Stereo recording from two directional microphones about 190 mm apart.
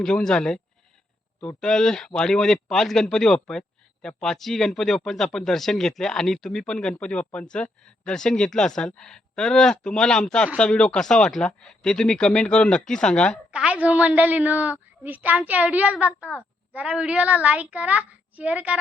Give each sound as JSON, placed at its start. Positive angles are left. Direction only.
{"t": 0.0, "sound": "speech", "side_deg": 5}
{"t": 13.5, "sound": "a woman's voice", "side_deg": -5}